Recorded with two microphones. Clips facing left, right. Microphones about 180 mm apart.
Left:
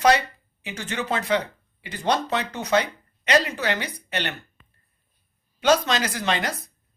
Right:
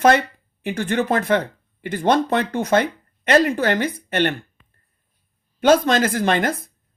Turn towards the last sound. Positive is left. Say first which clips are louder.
# right 6 dB
turn(degrees=-50)  # may be behind; listen again after turning